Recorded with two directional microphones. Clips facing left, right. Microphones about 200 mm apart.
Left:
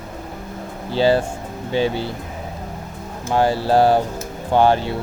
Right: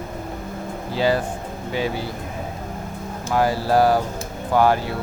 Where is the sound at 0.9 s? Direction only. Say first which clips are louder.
Left 4 dB; 30° left (ahead or behind).